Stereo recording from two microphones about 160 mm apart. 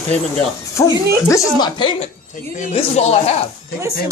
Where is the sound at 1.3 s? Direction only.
25° left (ahead or behind).